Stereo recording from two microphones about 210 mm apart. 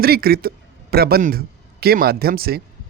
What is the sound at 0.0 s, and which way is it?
A man's voice, 45° right (ahead or behind).